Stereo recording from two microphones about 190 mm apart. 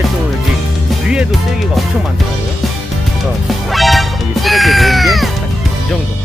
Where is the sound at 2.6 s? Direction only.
Centre (ahead or behind).